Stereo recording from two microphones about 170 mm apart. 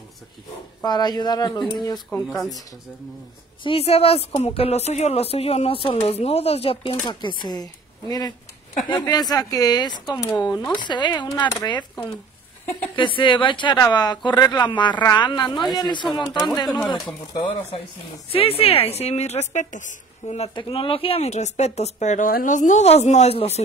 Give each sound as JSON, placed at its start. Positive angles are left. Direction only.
{"t": 0.8, "sound": "speech", "side_deg": 25}
{"t": 2.2, "sound": "speech", "side_deg": 0}
{"t": 3.6, "sound": "a woman's voice", "side_deg": 35}
{"t": 10.8, "sound": "speech", "side_deg": 25}
{"t": 12.9, "sound": "speech", "side_deg": 30}
{"t": 16.6, "sound": "speech", "side_deg": 0}
{"t": 17.3, "sound": "a woman's voice", "side_deg": 35}